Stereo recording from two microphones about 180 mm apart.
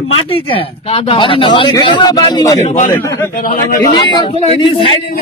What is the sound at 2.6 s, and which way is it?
Speech, 40° left (ahead or behind).